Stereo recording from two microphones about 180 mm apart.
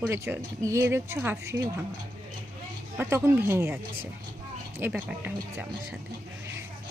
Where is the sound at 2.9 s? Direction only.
15° right (ahead or behind).